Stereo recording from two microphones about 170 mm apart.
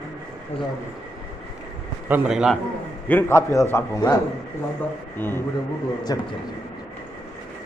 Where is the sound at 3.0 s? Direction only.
15° left (ahead or behind).